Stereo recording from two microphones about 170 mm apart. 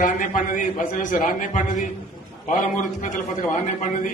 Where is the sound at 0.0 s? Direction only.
50° left (ahead or behind).